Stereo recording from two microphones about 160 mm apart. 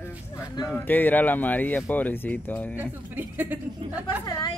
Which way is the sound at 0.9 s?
10° left (ahead or behind).